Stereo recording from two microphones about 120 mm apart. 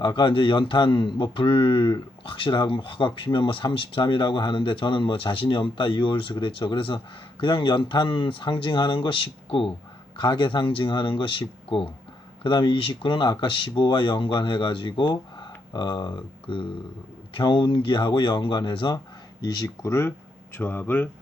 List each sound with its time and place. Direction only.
0.0 s a man's voice: 40° left (ahead or behind); by 21.1 s 15° left (ahead or behind)